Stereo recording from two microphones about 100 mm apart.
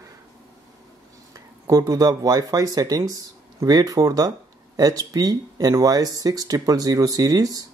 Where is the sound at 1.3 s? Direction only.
40° right (ahead or behind).